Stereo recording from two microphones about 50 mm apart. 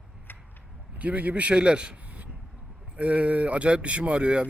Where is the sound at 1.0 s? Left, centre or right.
Right.